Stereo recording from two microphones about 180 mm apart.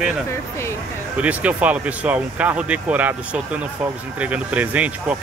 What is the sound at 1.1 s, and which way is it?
Speech, 5° right (ahead or behind).